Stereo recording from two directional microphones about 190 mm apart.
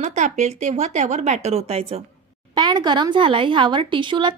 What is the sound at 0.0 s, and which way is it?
A woman's voice, 40° right (ahead or behind).